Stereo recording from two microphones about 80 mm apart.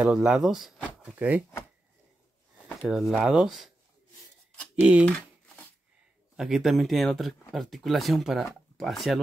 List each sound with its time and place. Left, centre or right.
0.0 s speech: centre
1.1 s speech: right
2.9 s speech: centre
4.7 s speech: centre
6.3 s speech: centre